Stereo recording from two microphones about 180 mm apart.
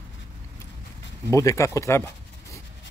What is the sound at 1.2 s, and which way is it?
Speech, 15° left (ahead or behind).